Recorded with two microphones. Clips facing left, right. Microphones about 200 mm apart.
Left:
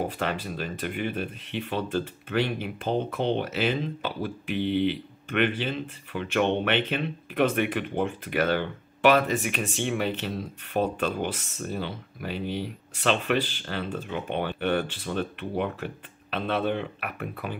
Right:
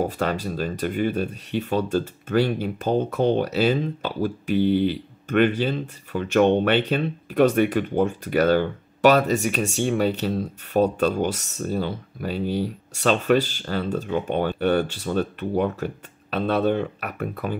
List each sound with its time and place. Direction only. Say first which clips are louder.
0.0 s speech: right 5 dB; 40° right (ahead or behind)